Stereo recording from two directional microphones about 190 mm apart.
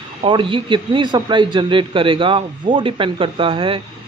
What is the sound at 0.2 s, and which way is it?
A man's voice, 25° right (ahead or behind).